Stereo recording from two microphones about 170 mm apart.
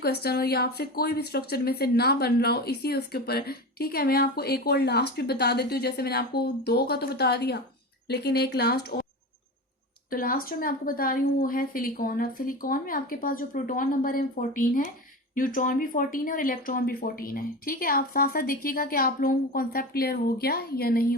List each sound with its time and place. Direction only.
0.0 s speech: 70° left (ahead or behind)
10.1 s speech: 55° left (ahead or behind)